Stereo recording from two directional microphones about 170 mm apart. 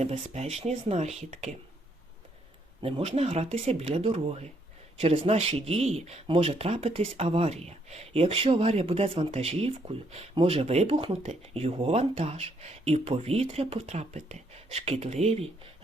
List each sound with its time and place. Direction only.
0.0 s speech: 40° right (ahead or behind)
2.8 s speech: 35° right (ahead or behind)